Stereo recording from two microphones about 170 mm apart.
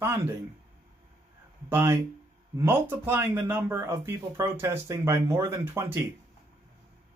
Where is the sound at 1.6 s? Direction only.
15° right (ahead or behind).